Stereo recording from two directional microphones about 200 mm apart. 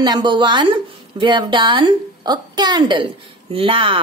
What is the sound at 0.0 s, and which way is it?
A woman's voice, 20° right (ahead or behind).